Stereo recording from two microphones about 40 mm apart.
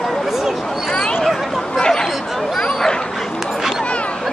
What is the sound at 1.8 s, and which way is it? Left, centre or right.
Chatter, centre.